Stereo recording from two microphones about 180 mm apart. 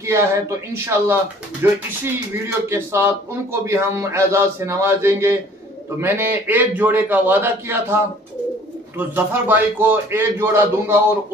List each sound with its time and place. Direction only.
0.0 s speech: 15° right (ahead or behind)